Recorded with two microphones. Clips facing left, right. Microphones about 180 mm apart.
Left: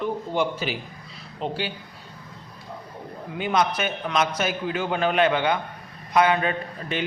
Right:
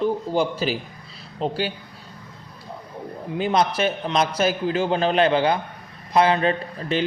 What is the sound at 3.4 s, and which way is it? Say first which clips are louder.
A man's voice: right 3 dB; 35° right (ahead or behind).